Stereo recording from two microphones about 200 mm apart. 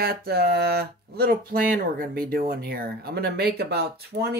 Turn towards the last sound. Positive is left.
turn(degrees=-55)  # may be behind; listen again after turning